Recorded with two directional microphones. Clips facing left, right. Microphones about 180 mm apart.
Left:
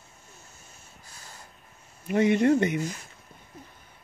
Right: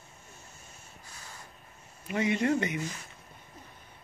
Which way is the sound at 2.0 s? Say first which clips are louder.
Left 7 dB; 50° left (ahead or behind).